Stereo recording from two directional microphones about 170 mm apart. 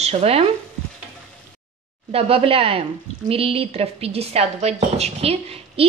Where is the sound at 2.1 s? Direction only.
35° right (ahead or behind).